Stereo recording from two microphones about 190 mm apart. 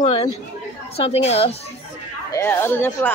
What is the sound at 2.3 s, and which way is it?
Speech, 10° left (ahead or behind).